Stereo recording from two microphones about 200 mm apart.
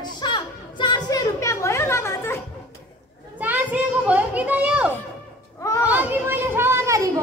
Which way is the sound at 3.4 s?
10° right (ahead or behind).